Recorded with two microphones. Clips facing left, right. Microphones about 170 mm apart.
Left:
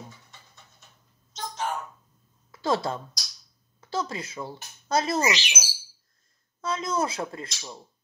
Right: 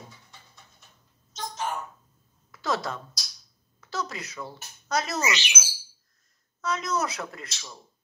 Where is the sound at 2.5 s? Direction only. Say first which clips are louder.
Left 3 dB; 30° left (ahead or behind).